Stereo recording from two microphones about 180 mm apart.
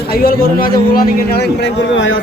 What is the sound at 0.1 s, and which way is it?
A man's voice, 55° left (ahead or behind).